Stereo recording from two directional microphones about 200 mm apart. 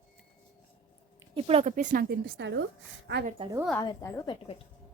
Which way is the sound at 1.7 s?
40° right (ahead or behind).